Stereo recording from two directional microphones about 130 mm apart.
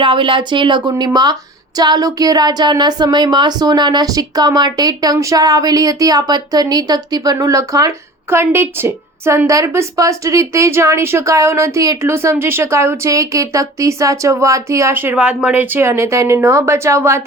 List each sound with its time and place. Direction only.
0.0 s a woman's voice: 40° right (ahead or behind); by 17.2 s 20° right (ahead or behind)